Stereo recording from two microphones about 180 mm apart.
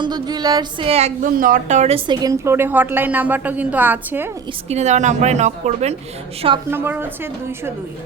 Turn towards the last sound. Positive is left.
turn(degrees=-15)  # may be behind; listen again after turning